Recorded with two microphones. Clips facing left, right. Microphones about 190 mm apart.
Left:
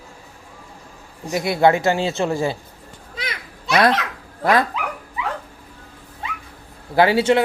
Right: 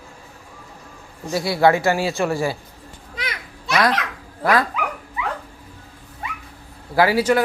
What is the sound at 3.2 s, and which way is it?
Children playing, 25° left (ahead or behind).